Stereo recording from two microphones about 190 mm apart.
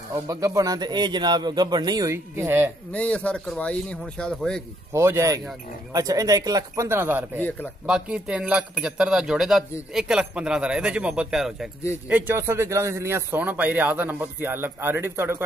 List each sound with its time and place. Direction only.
0.1 s a man's voice: 15° right (ahead or behind)
2.9 s speech: 5° left (ahead or behind)
4.9 s a man's voice: 15° right (ahead or behind)
7.3 s a man's voice: 10° left (ahead or behind)
7.8 s a man's voice: 5° right (ahead or behind)